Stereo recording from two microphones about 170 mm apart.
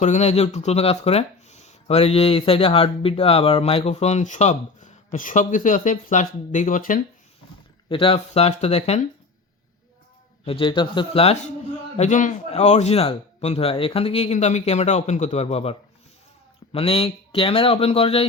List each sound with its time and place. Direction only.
0.0 s speech: 40° left (ahead or behind)
7.9 s speech: 30° left (ahead or behind)
10.4 s speech: 30° left (ahead or behind)